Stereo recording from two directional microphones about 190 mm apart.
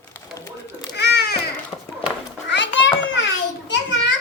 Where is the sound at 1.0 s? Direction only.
60° left (ahead or behind).